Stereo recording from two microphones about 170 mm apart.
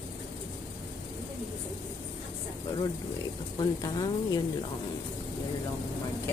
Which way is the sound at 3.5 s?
25° left (ahead or behind).